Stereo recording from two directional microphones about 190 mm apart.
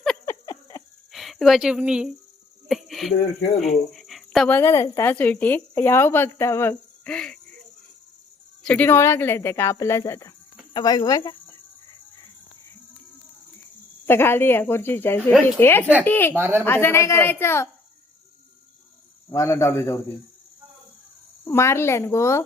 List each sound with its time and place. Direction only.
0.3 s a sound: 20° left (ahead or behind)
1.1 s speech: centre (ahead or behind)
8.6 s speech: 5° left (ahead or behind)
14.1 s speech: 10° left (ahead or behind)
16.3 s a woman's voice: 10° right (ahead or behind)
16.6 s speech: 10° left (ahead or behind)
19.3 s speech: 15° left (ahead or behind)
21.4 s speech: 15° left (ahead or behind)